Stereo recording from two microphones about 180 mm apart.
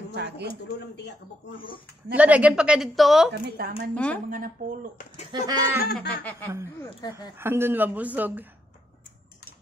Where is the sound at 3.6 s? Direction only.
60° right (ahead or behind).